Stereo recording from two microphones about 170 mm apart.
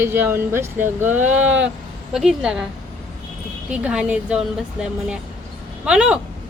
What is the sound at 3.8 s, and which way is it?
Speech, 5° right (ahead or behind).